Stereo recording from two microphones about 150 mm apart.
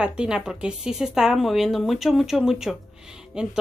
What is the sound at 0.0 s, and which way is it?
Speech, 5° right (ahead or behind).